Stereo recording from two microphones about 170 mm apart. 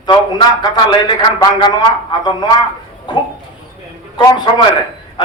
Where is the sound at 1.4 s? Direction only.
25° left (ahead or behind).